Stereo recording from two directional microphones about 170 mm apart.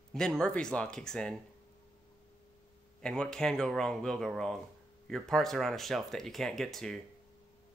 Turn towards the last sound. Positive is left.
turn(degrees=0)  # may be behind; listen again after turning